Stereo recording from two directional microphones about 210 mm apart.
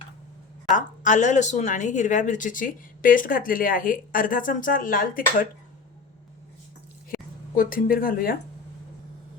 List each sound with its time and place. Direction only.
0.7 s speech: 35° left (ahead or behind)
7.5 s speech: 40° left (ahead or behind)